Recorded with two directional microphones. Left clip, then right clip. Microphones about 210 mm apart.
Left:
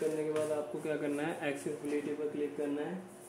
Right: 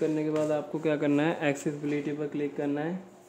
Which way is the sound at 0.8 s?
30° right (ahead or behind).